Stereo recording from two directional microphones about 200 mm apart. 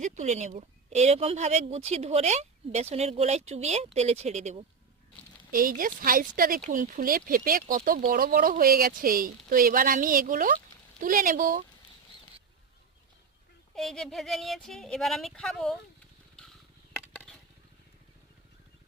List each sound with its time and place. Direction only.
0.0 s speech: 35° right (ahead or behind)
5.5 s speech: 45° right (ahead or behind)
13.7 s speech: centre (ahead or behind)
16.9 s a sound: 5° left (ahead or behind)